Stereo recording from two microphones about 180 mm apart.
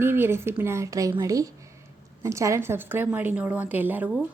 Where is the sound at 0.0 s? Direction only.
10° right (ahead or behind).